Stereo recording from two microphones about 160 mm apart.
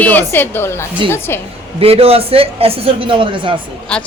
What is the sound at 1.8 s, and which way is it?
A man's voice, 35° right (ahead or behind).